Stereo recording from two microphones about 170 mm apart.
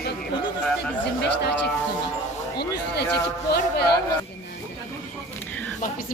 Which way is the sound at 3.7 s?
70° left (ahead or behind).